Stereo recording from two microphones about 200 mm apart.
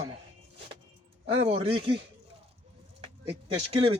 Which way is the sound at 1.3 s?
30° right (ahead or behind).